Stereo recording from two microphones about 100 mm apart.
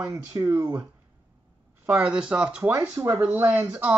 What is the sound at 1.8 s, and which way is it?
Speech, 15° right (ahead or behind).